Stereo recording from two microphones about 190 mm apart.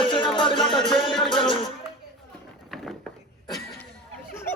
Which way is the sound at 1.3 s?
25° left (ahead or behind).